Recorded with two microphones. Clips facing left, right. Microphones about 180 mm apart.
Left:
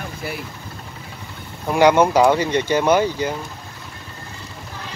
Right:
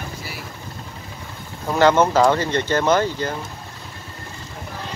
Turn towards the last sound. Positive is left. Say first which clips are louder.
# left 2 dB
turn(degrees=10)  # may be behind; listen again after turning